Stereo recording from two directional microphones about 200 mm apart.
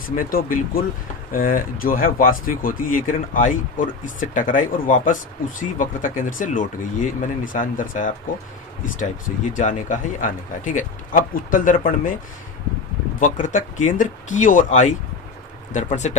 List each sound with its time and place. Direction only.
0.2 s speech: 45° left (ahead or behind)
9.5 s speech: 40° left (ahead or behind)
13.3 s speech: 40° left (ahead or behind)